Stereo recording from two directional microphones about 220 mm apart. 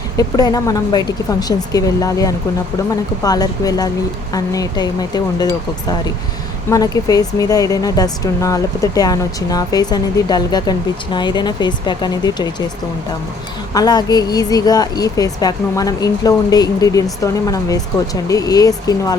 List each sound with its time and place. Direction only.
0.2 s speech: 15° left (ahead or behind)
6.7 s speech: 15° left (ahead or behind)
13.7 s speech: 15° left (ahead or behind)